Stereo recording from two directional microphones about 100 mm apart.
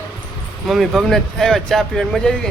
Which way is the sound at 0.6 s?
Centre (ahead or behind).